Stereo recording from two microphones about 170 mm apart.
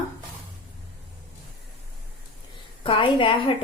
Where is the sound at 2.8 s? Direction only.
30° left (ahead or behind).